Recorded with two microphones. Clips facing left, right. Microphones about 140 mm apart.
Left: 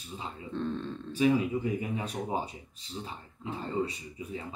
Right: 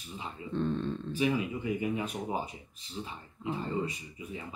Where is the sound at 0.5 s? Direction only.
Centre (ahead or behind).